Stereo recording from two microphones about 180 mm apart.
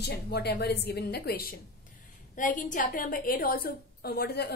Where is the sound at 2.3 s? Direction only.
45° left (ahead or behind).